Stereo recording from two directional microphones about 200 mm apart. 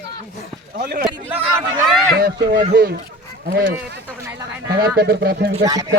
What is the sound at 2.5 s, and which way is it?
Speech, 45° right (ahead or behind).